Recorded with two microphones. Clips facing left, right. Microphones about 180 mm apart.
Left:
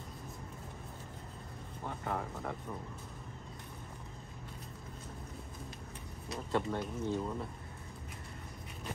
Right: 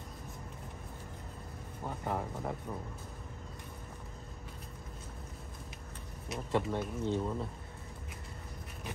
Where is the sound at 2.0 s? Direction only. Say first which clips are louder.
Right 2 dB; 15° right (ahead or behind).